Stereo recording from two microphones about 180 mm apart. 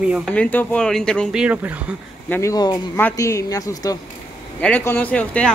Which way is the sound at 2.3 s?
15° left (ahead or behind).